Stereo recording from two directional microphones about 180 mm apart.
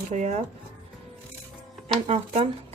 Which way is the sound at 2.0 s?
35° right (ahead or behind).